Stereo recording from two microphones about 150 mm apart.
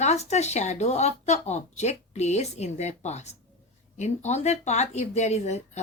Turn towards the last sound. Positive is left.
turn(degrees=50)  # may be behind; listen again after turning